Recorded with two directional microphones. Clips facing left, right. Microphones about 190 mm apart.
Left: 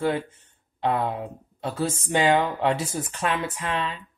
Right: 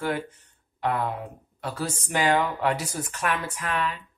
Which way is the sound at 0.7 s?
25° left (ahead or behind).